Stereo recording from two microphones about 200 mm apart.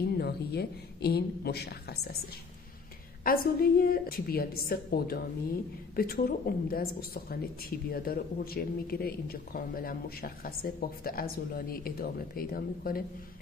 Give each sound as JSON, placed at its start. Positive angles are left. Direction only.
{"t": 0.0, "sound": "speech", "side_deg": 55}
{"t": 3.3, "sound": "speech", "side_deg": 45}